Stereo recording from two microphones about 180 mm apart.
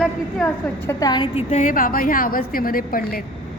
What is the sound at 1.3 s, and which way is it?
A woman's voice, 45° left (ahead or behind).